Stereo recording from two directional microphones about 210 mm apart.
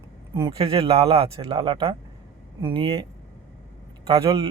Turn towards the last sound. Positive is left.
turn(degrees=-25)  # may be behind; listen again after turning